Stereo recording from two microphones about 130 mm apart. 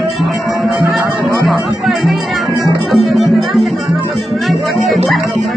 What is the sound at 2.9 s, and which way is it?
Music, centre (ahead or behind).